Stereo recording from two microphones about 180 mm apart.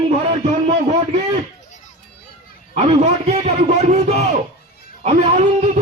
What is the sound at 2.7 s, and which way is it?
A man's voice, 35° right (ahead or behind).